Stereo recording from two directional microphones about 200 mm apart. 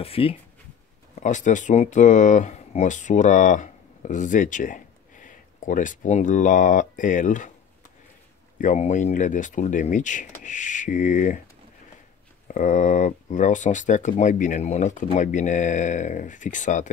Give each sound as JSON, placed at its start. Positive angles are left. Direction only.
{"t": 0.0, "sound": "speech", "side_deg": 30}
{"t": 1.2, "sound": "speech", "side_deg": 40}
{"t": 8.5, "sound": "speech", "side_deg": 35}
{"t": 12.4, "sound": "speech", "side_deg": 40}